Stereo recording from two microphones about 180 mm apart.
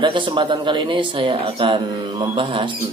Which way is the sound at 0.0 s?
25° right (ahead or behind).